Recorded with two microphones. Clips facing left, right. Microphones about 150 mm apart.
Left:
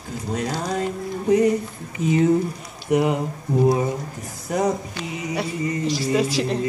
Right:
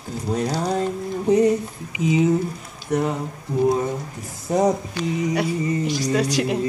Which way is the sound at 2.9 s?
15° left (ahead or behind).